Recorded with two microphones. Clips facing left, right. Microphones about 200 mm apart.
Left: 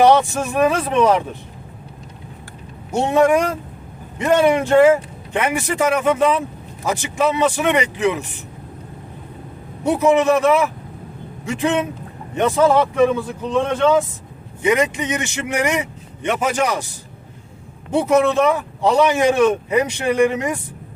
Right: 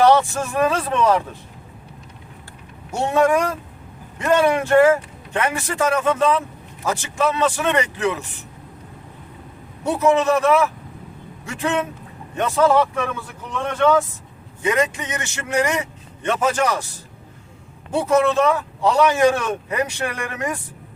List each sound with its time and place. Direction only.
0.0 s speech: 15° left (ahead or behind)
2.9 s speech: 20° left (ahead or behind)
9.8 s speech: 15° left (ahead or behind)
17.9 s speech: 15° left (ahead or behind)